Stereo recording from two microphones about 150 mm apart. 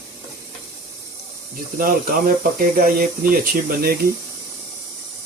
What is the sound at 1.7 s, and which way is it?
Speech, 70° right (ahead or behind).